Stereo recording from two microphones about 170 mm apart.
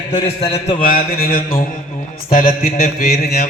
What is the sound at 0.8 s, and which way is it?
Mantra, 60° left (ahead or behind).